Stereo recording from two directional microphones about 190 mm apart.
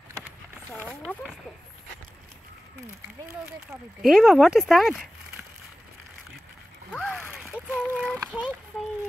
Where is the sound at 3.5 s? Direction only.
Centre (ahead or behind).